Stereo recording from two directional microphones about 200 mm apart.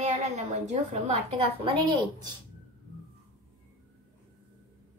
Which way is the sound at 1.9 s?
25° right (ahead or behind).